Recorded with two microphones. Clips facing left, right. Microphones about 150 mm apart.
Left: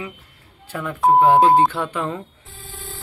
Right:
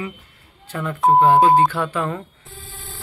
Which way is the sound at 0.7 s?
10° left (ahead or behind).